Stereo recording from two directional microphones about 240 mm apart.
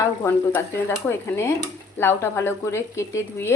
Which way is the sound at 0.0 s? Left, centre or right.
Centre.